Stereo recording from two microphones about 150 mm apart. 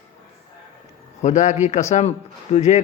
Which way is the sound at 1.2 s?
55° left (ahead or behind).